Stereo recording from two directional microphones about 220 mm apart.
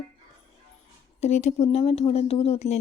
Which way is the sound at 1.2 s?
30° left (ahead or behind).